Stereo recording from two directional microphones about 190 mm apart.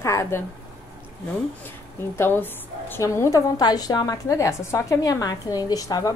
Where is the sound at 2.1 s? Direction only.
10° left (ahead or behind).